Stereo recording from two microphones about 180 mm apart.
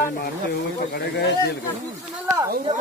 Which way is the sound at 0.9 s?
65° left (ahead or behind).